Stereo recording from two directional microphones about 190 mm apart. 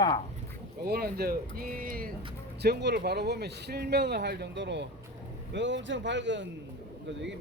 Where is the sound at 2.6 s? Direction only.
60° right (ahead or behind).